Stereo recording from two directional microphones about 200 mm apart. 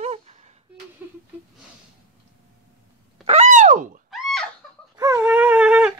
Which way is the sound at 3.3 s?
35° right (ahead or behind).